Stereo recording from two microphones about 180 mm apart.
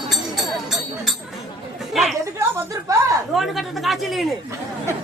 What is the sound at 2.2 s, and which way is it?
Speech, 15° right (ahead or behind).